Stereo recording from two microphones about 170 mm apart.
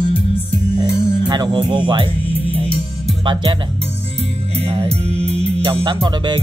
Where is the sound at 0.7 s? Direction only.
25° right (ahead or behind).